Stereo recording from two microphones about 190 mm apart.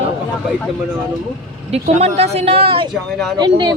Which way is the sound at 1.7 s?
35° right (ahead or behind).